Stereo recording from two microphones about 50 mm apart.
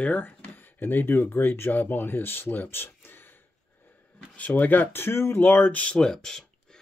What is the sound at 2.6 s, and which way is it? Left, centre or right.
Speech, left.